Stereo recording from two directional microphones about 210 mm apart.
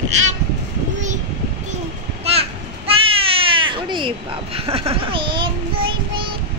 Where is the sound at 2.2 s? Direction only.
30° right (ahead or behind).